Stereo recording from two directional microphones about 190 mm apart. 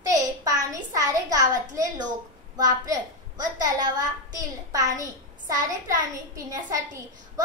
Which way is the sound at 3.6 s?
20° right (ahead or behind).